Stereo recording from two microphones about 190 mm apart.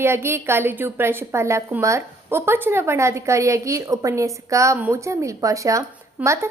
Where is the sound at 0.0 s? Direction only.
15° right (ahead or behind).